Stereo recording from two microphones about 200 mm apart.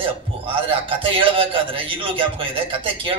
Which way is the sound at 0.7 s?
25° right (ahead or behind).